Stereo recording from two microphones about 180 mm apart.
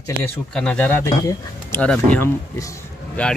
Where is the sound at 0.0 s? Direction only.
10° left (ahead or behind).